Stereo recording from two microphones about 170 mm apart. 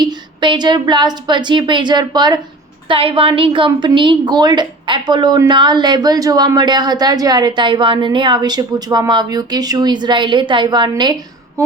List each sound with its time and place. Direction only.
0.0 s a woman's voice: 25° right (ahead or behind)